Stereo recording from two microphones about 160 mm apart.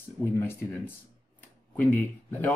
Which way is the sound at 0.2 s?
15° left (ahead or behind).